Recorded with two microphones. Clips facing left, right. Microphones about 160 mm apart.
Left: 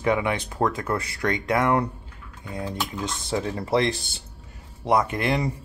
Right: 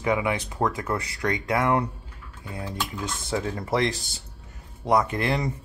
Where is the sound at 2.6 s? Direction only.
20° left (ahead or behind).